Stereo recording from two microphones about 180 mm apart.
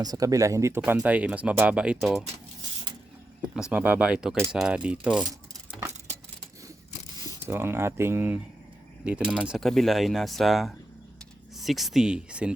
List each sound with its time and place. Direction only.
0.0 s speech: 20° right (ahead or behind); by 2.2 s centre (ahead or behind)
3.5 s speech: 5° right (ahead or behind)
7.2 s speech: 15° right (ahead or behind)